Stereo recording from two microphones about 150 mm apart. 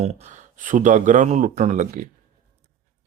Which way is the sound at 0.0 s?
55° right (ahead or behind).